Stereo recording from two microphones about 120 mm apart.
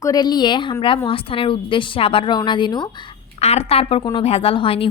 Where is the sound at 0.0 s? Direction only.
35° left (ahead or behind).